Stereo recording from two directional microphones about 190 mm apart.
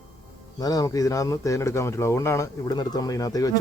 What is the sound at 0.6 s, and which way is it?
A man's voice, 20° left (ahead or behind).